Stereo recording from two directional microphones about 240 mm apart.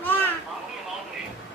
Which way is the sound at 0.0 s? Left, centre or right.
Centre.